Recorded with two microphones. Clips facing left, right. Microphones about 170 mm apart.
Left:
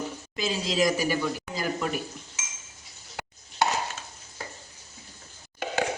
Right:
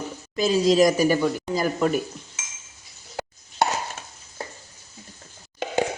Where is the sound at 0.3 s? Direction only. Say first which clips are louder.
Right 9 dB; 45° right (ahead or behind).